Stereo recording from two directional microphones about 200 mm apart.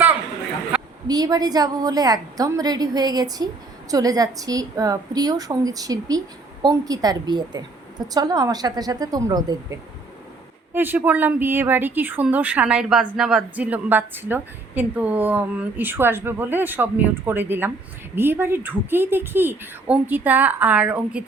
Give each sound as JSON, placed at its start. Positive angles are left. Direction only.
{"t": 1.0, "sound": "a woman's voice", "side_deg": -20}
{"t": 10.8, "sound": "speech", "side_deg": -10}